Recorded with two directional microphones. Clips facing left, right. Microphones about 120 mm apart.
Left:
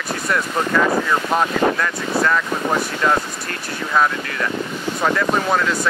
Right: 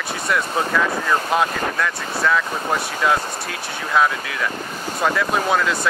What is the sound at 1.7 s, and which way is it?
Speech, centre (ahead or behind).